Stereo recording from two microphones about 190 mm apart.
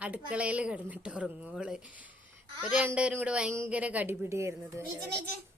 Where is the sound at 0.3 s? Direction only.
5° right (ahead or behind).